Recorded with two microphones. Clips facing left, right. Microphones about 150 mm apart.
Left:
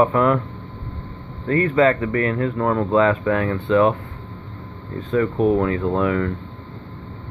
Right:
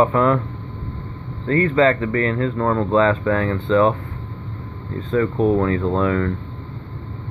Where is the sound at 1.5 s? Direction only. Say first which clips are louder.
Right 1 dB; 15° left (ahead or behind).